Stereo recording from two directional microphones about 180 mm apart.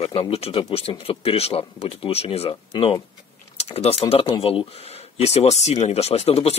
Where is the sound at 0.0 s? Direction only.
30° left (ahead or behind).